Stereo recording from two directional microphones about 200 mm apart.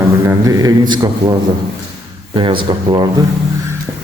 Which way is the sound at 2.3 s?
25° right (ahead or behind).